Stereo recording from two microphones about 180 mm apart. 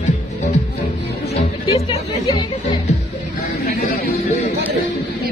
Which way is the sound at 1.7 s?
35° left (ahead or behind).